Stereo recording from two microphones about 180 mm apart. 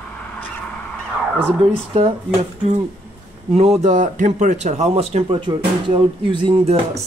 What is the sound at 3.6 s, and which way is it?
Speech, 40° right (ahead or behind).